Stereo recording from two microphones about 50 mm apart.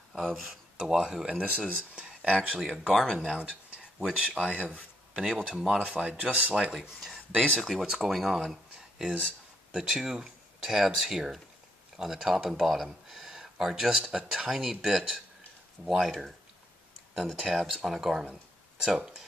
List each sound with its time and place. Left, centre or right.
0.2 s speech: centre
0.7 s speech: centre
1.4 s speech: right
2.9 s speech: centre
3.3 s a sound: right
4.1 s speech: centre
4.7 s speech: centre
7.3 s speech: centre
7.8 s speech: centre
8.2 s a sound: centre
9.7 s speech: centre
18.3 s a sound: centre